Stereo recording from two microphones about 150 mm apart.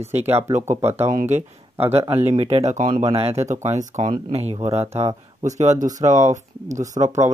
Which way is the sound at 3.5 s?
50° right (ahead or behind).